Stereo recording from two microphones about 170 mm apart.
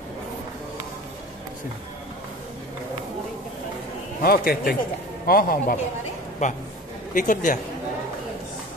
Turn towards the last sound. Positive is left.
turn(degrees=50)  # may be behind; listen again after turning